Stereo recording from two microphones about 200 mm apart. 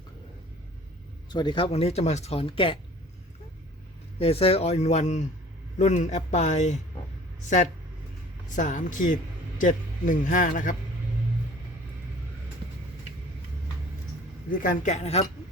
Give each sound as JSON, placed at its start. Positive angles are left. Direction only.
{"t": 1.3, "sound": "speech", "side_deg": 20}
{"t": 4.2, "sound": "a man's voice", "side_deg": 30}
{"t": 8.5, "sound": "a man's voice", "side_deg": 40}
{"t": 14.6, "sound": "a man's voice", "side_deg": 40}